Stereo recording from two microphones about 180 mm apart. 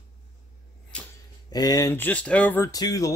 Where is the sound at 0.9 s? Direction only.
5° left (ahead or behind).